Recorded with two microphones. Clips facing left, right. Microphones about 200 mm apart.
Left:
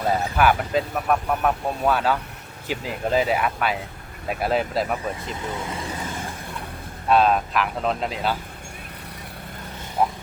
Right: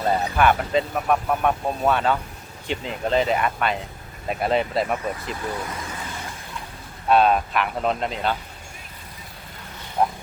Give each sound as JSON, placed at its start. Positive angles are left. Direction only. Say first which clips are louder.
{"t": 0.0, "sound": "speech", "louder": "even", "side_deg": 5}
{"t": 5.5, "sound": "speech", "louder": "even", "side_deg": 25}
{"t": 7.1, "sound": "speech", "louder": "right 1 dB", "side_deg": 0}
{"t": 10.0, "sound": "speech", "louder": "even", "side_deg": 0}